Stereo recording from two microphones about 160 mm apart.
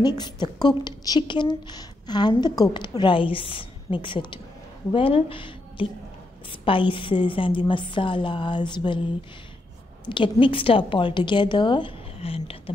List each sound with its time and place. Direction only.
0.0 s a woman's voice: 25° left (ahead or behind)
10.0 s a woman's voice: 30° left (ahead or behind)